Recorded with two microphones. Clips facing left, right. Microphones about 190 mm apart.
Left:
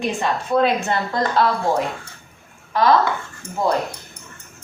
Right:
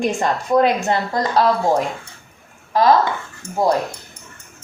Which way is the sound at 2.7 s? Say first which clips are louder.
Right 2 dB; 40° right (ahead or behind).